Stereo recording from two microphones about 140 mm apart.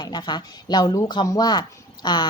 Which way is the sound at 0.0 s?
30° left (ahead or behind).